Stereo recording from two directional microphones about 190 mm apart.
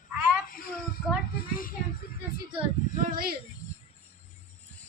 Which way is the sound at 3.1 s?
50° right (ahead or behind).